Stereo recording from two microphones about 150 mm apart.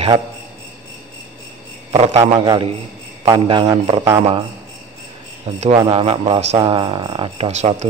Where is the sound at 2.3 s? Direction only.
30° right (ahead or behind).